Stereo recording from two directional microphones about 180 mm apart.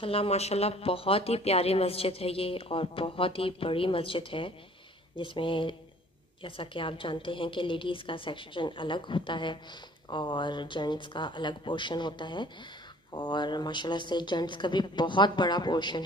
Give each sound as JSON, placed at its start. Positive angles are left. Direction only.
{"t": 0.0, "sound": "a woman's voice", "side_deg": 30}